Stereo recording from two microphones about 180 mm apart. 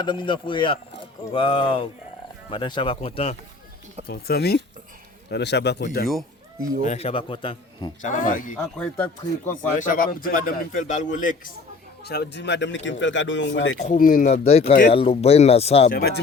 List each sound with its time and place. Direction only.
0.0 s a man's voice: 25° left (ahead or behind)
4.0 s speech: 60° left (ahead or behind)
6.8 s a man's voice: 35° left (ahead or behind)
8.0 s a man's voice: 45° left (ahead or behind)
12.0 s speech: 65° left (ahead or behind); by 13.7 s 85° left
13.7 s a man's voice: 45° left (ahead or behind)
14.7 s a man's voice: 50° left (ahead or behind)
14.9 s speech: 35° left (ahead or behind)
15.9 s speech: 60° left (ahead or behind)